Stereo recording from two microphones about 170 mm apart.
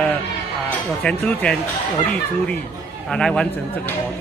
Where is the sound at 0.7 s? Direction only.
5° left (ahead or behind).